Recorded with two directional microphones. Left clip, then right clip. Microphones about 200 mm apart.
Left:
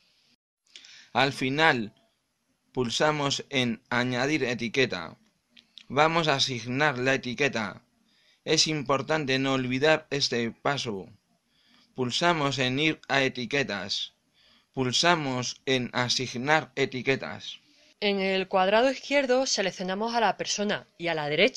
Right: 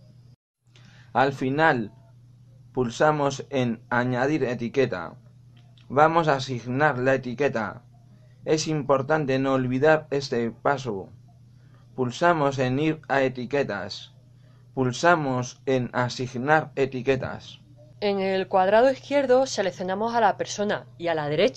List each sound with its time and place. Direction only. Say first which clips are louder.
0.7 s speech: right 3 dB; 30° left (ahead or behind)